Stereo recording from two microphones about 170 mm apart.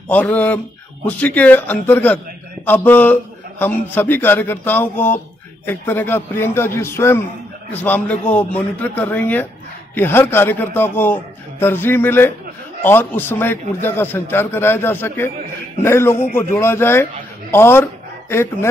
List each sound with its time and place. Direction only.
0.1 s a man's voice: 10° left (ahead or behind)